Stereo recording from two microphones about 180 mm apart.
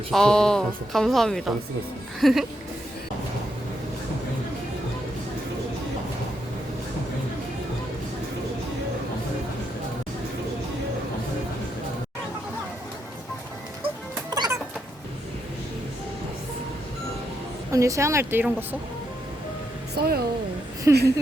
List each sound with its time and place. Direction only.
0.1 s speech: 5° left (ahead or behind)
14.3 s music: 20° right (ahead or behind)
17.7 s speech: 15° right (ahead or behind)
20.0 s speech: 60° right (ahead or behind)
20.9 s speech: 15° right (ahead or behind)